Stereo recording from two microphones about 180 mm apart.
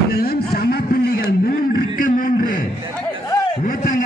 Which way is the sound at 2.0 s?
50° left (ahead or behind).